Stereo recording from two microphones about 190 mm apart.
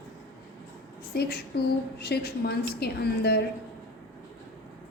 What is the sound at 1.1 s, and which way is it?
A woman's voice, 60° left (ahead or behind).